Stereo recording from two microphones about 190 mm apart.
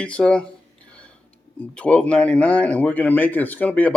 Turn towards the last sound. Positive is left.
turn(degrees=5)  # may be behind; listen again after turning